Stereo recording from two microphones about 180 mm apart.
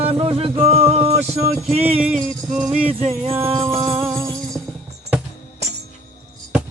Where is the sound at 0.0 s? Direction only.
30° right (ahead or behind).